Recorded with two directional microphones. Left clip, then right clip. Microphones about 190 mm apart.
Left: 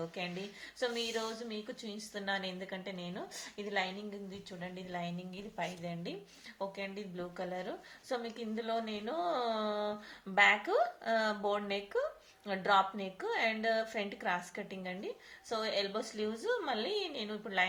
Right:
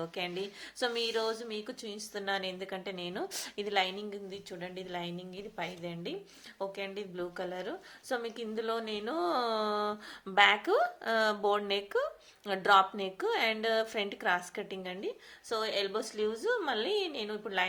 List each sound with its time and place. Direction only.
0.0 s a woman's voice: 35° right (ahead or behind)